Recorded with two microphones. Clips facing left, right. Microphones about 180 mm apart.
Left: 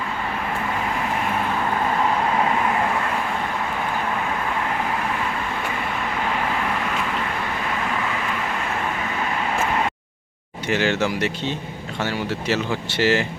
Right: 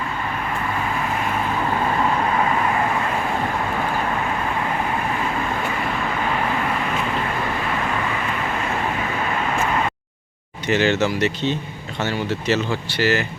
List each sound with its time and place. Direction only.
10.7 s speech: 10° left (ahead or behind)
12.9 s speech: 25° left (ahead or behind)